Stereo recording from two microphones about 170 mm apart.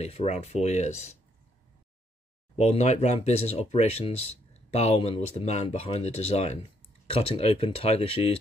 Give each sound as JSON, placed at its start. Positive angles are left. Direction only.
{"t": 0.0, "sound": "speech", "side_deg": 40}
{"t": 2.5, "sound": "speech", "side_deg": 40}